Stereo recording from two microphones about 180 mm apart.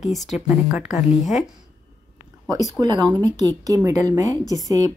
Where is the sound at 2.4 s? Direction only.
20° right (ahead or behind).